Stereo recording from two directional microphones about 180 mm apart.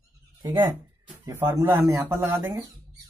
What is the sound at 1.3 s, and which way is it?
Speech, 15° right (ahead or behind).